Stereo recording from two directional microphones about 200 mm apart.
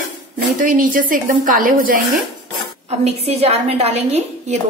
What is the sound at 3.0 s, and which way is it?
A woman's voice, 30° right (ahead or behind).